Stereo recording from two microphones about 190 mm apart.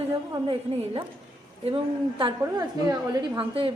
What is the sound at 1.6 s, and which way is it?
A woman's voice, 25° right (ahead or behind).